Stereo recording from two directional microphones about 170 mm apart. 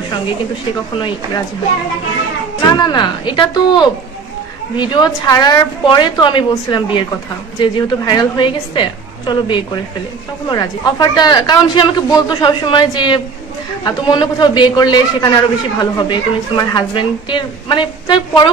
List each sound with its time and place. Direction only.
0.9 s a woman's voice: 30° left (ahead or behind)
2.8 s a woman's voice: 25° left (ahead or behind)